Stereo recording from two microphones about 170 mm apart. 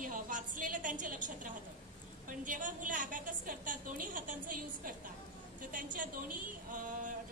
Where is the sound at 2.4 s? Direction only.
50° right (ahead or behind).